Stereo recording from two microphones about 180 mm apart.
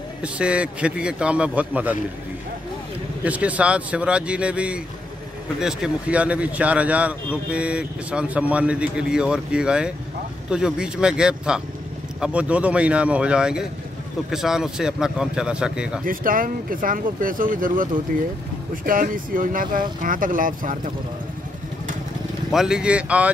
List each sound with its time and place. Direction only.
0.2 s a man's voice: 5° right (ahead or behind)
3.3 s a man's voice: 10° right (ahead or behind)
16.1 s speech: 50° right (ahead or behind)
18.9 s speech: 50° right (ahead or behind)
22.5 s a man's voice: 5° right (ahead or behind)